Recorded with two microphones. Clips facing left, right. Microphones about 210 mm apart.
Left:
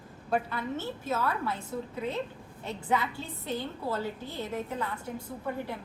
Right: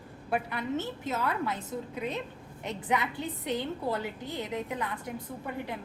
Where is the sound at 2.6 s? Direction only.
20° right (ahead or behind).